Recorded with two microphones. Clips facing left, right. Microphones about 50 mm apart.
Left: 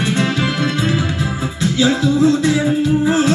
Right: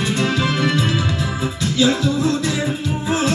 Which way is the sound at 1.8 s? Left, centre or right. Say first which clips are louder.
Left 3 dB; left.